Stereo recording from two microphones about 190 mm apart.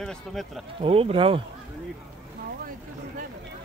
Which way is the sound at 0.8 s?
30° right (ahead or behind).